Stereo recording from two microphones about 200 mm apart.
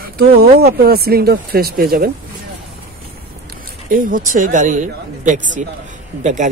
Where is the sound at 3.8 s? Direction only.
40° right (ahead or behind).